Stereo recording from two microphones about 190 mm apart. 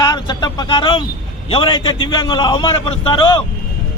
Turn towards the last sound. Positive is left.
turn(degrees=25)  # may be behind; listen again after turning